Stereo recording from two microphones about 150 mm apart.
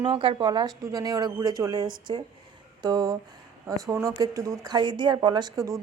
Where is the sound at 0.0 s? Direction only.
35° right (ahead or behind).